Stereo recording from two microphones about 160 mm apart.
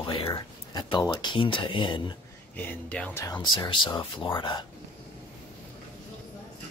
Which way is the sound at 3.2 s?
25° left (ahead or behind).